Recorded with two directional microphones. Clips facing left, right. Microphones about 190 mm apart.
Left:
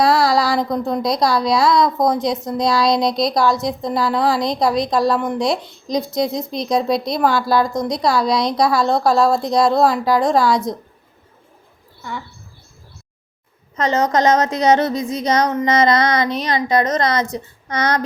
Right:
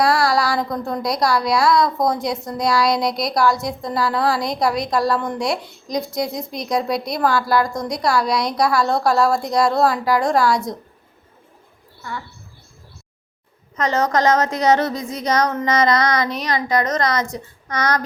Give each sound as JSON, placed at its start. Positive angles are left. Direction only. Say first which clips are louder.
{"t": 0.0, "sound": "a woman's voice", "louder": "left 2 dB", "side_deg": 20}
{"t": 13.7, "sound": "a woman's voice", "louder": "left 2 dB", "side_deg": 20}